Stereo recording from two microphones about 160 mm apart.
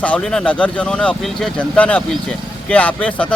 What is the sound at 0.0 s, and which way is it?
Speech, 5° left (ahead or behind).